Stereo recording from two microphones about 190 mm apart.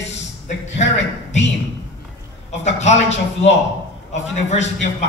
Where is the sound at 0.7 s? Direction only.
35° left (ahead or behind).